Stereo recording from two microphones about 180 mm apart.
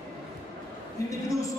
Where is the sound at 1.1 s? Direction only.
15° left (ahead or behind).